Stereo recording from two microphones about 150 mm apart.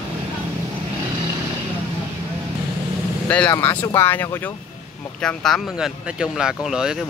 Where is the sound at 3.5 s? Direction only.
15° left (ahead or behind).